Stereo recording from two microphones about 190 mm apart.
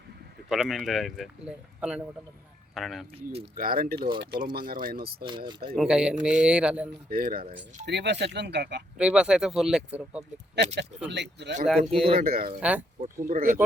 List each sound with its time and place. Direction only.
0.4 s speech: centre (ahead or behind)
3.5 s speech: 50° right (ahead or behind)
4.5 s speech: 50° right (ahead or behind)
5.5 s speech: 25° right (ahead or behind)
5.7 s speech: 5° right (ahead or behind)
7.1 s speech: 50° right (ahead or behind)
7.9 s speech: 65° right (ahead or behind)
9.0 s speech: 5° right (ahead or behind)
10.8 s speech: 65° right (ahead or behind)
11.9 s speech: 30° right (ahead or behind)
12.2 s speech: 50° right (ahead or behind)
12.5 s speech: 5° right (ahead or behind)
13.2 s speech: 45° right (ahead or behind)